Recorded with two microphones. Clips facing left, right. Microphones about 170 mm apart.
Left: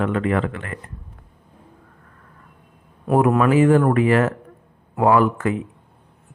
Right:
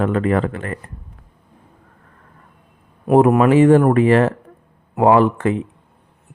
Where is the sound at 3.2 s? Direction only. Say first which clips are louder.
Right 4 dB; 25° right (ahead or behind).